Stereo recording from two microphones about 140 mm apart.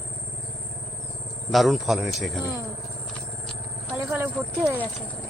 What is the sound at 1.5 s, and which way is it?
Speech, centre (ahead or behind).